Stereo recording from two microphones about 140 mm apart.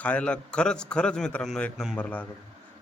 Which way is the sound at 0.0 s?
10° left (ahead or behind).